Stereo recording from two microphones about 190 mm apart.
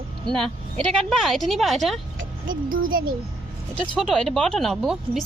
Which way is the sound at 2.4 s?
45° right (ahead or behind).